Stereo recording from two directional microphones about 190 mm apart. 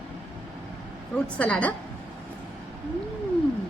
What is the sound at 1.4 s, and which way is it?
Speech, 5° left (ahead or behind).